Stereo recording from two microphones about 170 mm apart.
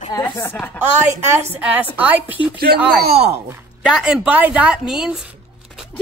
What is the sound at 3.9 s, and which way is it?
A woman's voice, 5° right (ahead or behind).